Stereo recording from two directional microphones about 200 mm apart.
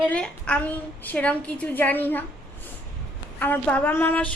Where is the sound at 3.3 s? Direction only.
10° left (ahead or behind).